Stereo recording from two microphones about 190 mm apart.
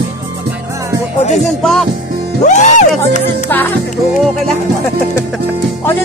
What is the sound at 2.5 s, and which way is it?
Speech, 40° left (ahead or behind).